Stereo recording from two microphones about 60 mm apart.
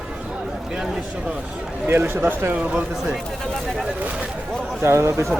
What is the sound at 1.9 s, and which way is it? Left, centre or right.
Speech, right.